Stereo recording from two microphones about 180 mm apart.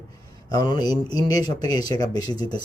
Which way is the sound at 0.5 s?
25° left (ahead or behind).